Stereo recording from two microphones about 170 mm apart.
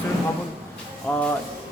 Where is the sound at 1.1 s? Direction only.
5° left (ahead or behind).